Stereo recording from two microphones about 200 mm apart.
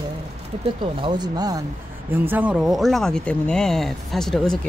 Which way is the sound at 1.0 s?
20° right (ahead or behind).